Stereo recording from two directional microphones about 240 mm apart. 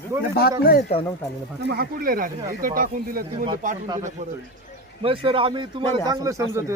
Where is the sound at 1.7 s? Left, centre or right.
Right.